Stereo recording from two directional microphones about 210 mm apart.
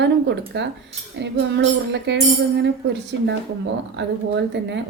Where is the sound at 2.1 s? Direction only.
55° right (ahead or behind).